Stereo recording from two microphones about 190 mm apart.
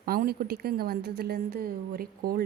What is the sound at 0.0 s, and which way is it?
A woman's voice, 50° right (ahead or behind).